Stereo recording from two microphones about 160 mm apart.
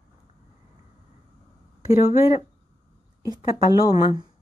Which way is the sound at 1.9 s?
35° left (ahead or behind).